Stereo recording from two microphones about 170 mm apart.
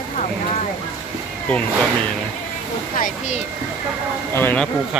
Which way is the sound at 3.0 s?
50° left (ahead or behind).